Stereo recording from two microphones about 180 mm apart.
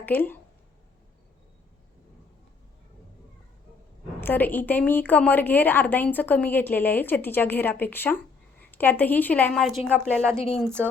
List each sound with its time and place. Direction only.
0.0 s speech: 10° left (ahead or behind)
4.2 s a woman's voice: 10° left (ahead or behind)
10.3 s a woman's voice: 35° left (ahead or behind)